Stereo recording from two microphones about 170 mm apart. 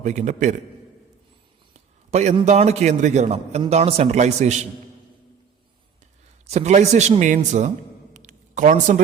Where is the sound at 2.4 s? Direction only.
40° right (ahead or behind).